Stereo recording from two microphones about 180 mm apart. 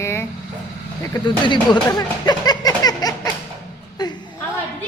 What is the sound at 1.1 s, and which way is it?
Speech, 25° left (ahead or behind).